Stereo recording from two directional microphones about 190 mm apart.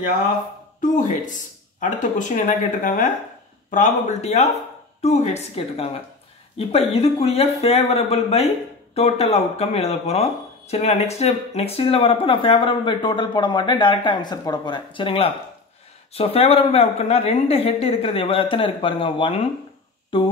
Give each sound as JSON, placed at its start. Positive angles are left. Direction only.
{"t": 0.7, "sound": "speech", "side_deg": 40}